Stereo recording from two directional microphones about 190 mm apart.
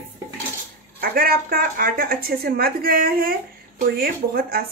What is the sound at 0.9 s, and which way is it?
Speech, 50° right (ahead or behind).